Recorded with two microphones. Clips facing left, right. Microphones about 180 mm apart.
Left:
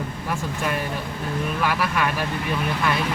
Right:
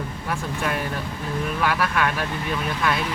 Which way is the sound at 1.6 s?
Centre (ahead or behind).